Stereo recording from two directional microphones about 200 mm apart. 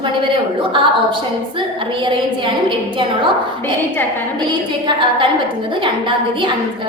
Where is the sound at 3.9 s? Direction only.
10° left (ahead or behind).